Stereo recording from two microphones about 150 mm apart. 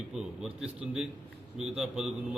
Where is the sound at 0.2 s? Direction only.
10° right (ahead or behind).